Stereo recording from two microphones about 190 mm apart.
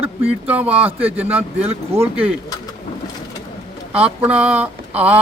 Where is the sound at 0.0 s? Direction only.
10° right (ahead or behind).